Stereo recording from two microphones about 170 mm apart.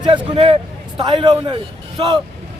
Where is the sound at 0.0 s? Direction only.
30° right (ahead or behind).